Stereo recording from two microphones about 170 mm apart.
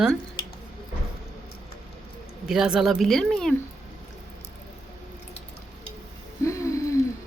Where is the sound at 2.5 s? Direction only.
5° right (ahead or behind).